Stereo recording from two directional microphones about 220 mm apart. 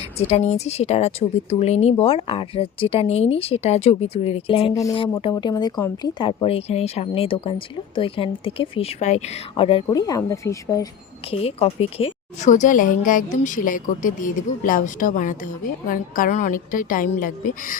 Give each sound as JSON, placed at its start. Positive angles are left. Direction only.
{"t": 0.2, "sound": "speech", "side_deg": 30}
{"t": 4.7, "sound": "speech", "side_deg": 15}
{"t": 11.3, "sound": "speech", "side_deg": 25}